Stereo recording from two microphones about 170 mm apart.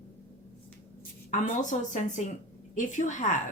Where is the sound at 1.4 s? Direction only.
45° left (ahead or behind).